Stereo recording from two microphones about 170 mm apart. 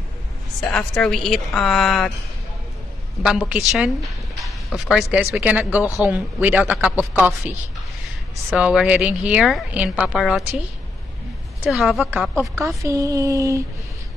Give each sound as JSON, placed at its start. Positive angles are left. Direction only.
{"t": 0.6, "sound": "a woman's voice", "side_deg": 5}
{"t": 3.2, "sound": "a woman's voice", "side_deg": -5}
{"t": 4.4, "sound": "a sound", "side_deg": 0}
{"t": 5.1, "sound": "speech", "side_deg": -5}
{"t": 8.5, "sound": "speech", "side_deg": -5}
{"t": 11.6, "sound": "a woman's voice", "side_deg": -5}
{"t": 12.0, "sound": "speech", "side_deg": -15}